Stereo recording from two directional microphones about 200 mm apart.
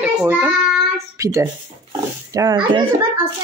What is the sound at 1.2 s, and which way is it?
Speech, 15° right (ahead or behind).